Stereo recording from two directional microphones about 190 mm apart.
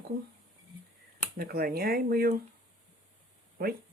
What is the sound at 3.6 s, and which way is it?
Speech, 50° right (ahead or behind).